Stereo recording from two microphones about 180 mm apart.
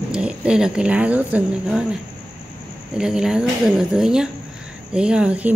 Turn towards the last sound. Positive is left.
turn(degrees=-5)  # may be behind; listen again after turning